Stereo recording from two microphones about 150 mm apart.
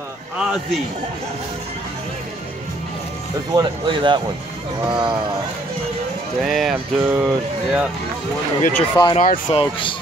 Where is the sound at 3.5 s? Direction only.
30° right (ahead or behind).